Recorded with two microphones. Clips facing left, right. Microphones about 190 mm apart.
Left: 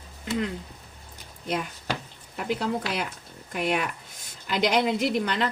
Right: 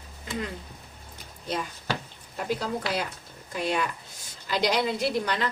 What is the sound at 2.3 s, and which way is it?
Speech, 60° left (ahead or behind).